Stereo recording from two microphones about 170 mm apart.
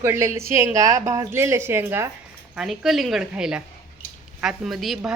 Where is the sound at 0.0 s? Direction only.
15° right (ahead or behind).